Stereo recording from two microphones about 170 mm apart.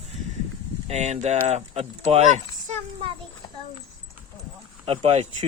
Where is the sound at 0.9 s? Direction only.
45° right (ahead or behind).